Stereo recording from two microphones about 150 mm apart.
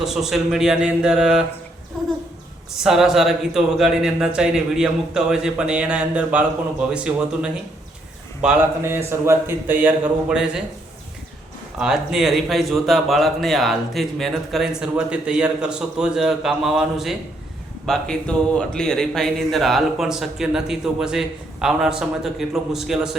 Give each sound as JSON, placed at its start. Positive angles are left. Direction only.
{"t": 0.0, "sound": "speech", "side_deg": -5}
{"t": 2.8, "sound": "speech", "side_deg": -5}
{"t": 8.8, "sound": "speech", "side_deg": -15}
{"t": 11.8, "sound": "speech", "side_deg": -5}